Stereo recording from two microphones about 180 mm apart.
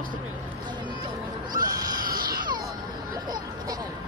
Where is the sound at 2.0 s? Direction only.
55° right (ahead or behind).